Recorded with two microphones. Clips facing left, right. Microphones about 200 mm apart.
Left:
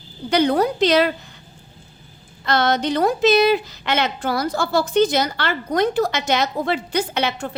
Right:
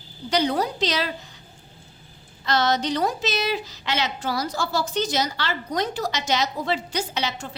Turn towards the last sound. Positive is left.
turn(degrees=60)  # may be behind; listen again after turning